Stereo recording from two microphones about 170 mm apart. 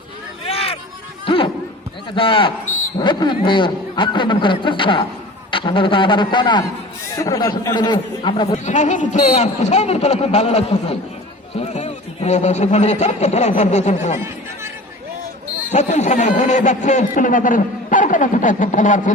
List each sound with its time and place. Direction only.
0.4 s a sound: 35° left (ahead or behind)
2.1 s a man's voice: 30° left (ahead or behind)
8.5 s a man's voice: 45° left (ahead or behind)
15.7 s speech: 45° left (ahead or behind)